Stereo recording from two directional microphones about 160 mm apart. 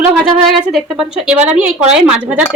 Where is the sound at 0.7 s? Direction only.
Centre (ahead or behind).